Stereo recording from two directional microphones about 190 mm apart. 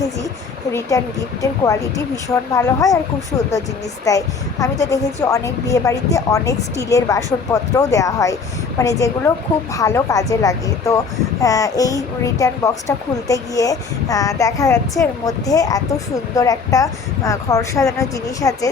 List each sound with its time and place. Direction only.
0.7 s speech: 15° left (ahead or behind)
4.1 s speech: 15° left (ahead or behind)